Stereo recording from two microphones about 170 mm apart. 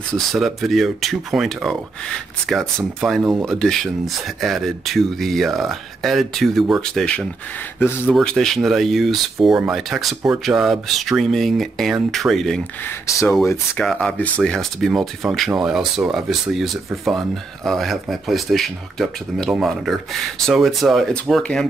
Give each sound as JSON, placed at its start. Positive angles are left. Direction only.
{"t": 0.3, "sound": "speech", "side_deg": 0}
{"t": 13.0, "sound": "speech", "side_deg": 20}
{"t": 13.7, "sound": "speech", "side_deg": 5}